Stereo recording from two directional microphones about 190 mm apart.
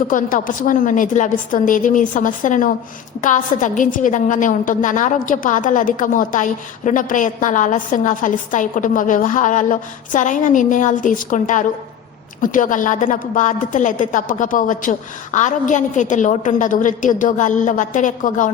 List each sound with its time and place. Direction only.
0.1 s a woman's voice: 45° left (ahead or behind)